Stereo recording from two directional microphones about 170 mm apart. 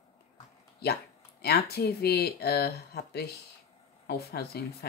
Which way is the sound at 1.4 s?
70° left (ahead or behind).